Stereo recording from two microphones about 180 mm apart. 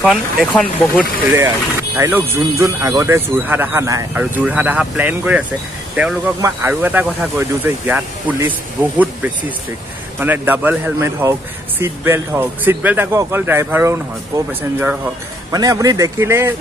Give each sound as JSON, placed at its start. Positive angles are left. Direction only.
{"t": 0.0, "sound": "speech", "side_deg": 0}
{"t": 2.0, "sound": "speech", "side_deg": -10}